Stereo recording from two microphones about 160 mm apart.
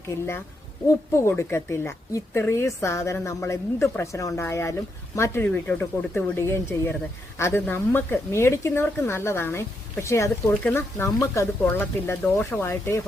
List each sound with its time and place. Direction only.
1.1 s a woman's voice: 15° left (ahead or behind)